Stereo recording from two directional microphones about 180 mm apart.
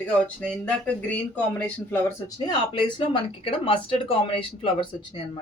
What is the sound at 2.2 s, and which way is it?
Speech, 25° left (ahead or behind).